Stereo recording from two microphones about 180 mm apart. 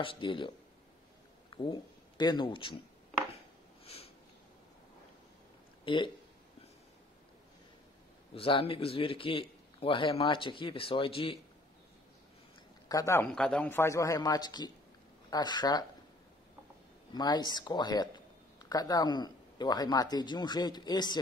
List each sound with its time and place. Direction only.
0.0 s a man's voice: 30° left (ahead or behind)
1.5 s speech: 25° left (ahead or behind)
3.8 s sniff: 35° left (ahead or behind)
8.4 s a man's voice: 30° left (ahead or behind)
12.8 s speech: 15° left (ahead or behind)
13.3 s a man's voice: 5° left (ahead or behind); by 15.8 s 25° left (ahead or behind)
17.1 s a man's voice: 20° left (ahead or behind)